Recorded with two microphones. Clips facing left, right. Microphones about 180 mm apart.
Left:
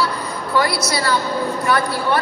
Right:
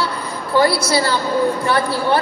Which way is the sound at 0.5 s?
30° right (ahead or behind).